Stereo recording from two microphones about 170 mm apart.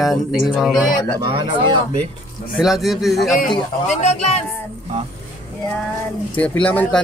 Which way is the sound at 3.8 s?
40° left (ahead or behind).